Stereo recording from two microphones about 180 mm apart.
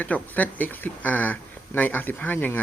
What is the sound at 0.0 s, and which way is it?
Speech, 10° left (ahead or behind).